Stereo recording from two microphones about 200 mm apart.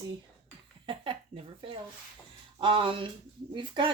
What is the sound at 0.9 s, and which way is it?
Speech, 25° right (ahead or behind).